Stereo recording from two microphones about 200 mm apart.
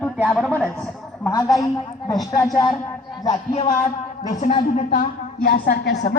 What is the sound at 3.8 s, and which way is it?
Speech, 20° left (ahead or behind).